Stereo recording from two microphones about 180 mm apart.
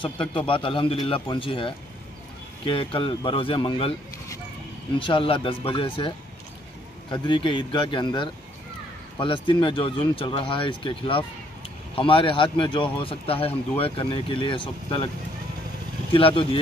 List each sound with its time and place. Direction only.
0.0 s speech: 30° left (ahead or behind)
4.9 s speech: 30° left (ahead or behind)
16.1 s speech: 30° left (ahead or behind)